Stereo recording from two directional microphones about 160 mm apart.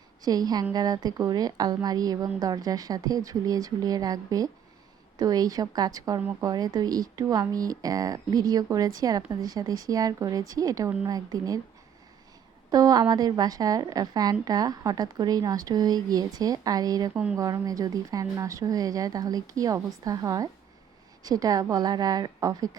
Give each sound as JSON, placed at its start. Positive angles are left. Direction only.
{"t": 0.2, "sound": "a woman's voice", "side_deg": -25}
{"t": 12.7, "sound": "a woman's voice", "side_deg": -25}